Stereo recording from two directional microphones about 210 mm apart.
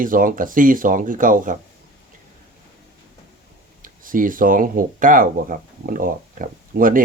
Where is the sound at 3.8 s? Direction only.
40° right (ahead or behind).